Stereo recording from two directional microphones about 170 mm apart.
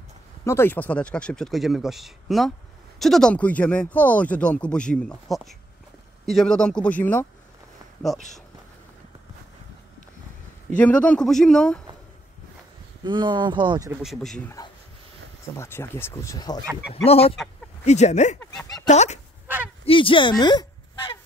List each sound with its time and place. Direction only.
0.5 s speech: 15° left (ahead or behind)
10.8 s speech: 5° left (ahead or behind)
13.0 s speech: 25° right (ahead or behind)
14.0 s speech: centre (ahead or behind)
15.4 s speech: 15° left (ahead or behind)
16.9 s speech: 35° left (ahead or behind)
18.4 s speech: 15° left (ahead or behind)
18.9 s speech: 40° left (ahead or behind)
19.4 s a sound: 10° right (ahead or behind)
19.8 s speech: 30° left (ahead or behind)